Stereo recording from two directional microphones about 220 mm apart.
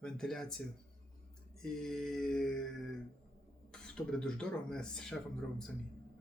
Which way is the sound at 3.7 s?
5° left (ahead or behind).